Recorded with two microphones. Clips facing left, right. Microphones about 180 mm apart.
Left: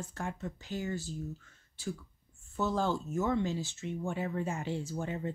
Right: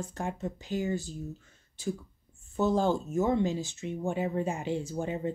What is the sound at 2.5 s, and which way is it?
Speech, 15° right (ahead or behind).